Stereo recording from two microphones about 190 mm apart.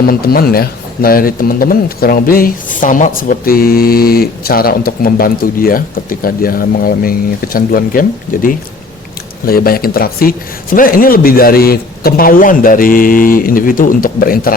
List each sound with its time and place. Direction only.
0.0 s speech: 55° left (ahead or behind)